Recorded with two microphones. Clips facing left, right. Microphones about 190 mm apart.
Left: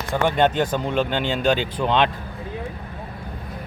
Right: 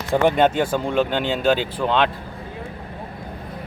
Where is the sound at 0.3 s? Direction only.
10° right (ahead or behind).